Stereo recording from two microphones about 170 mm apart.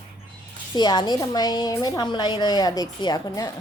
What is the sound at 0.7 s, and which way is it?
A woman's voice, 25° left (ahead or behind).